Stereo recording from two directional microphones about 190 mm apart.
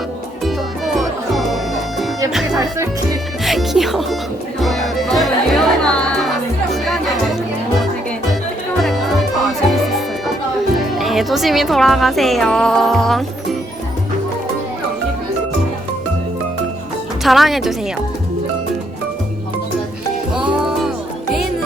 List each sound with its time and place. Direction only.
0.9 s music: centre (ahead or behind)
2.6 s speech: 15° right (ahead or behind)
3.4 s music: centre (ahead or behind)
8.8 s music: centre (ahead or behind)
10.9 s a woman's voice: centre (ahead or behind)
17.2 s a woman's voice: centre (ahead or behind)
20.3 s music: 5° right (ahead or behind)